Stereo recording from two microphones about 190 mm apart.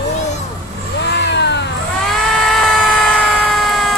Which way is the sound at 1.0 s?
65° left (ahead or behind).